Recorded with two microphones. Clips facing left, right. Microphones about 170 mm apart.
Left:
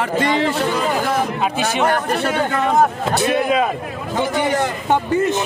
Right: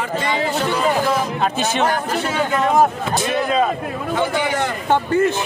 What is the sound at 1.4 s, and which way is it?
Speech, 10° left (ahead or behind).